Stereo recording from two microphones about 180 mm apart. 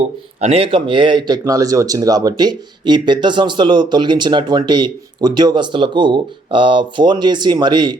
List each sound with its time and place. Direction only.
0.0 s speech: 35° right (ahead or behind)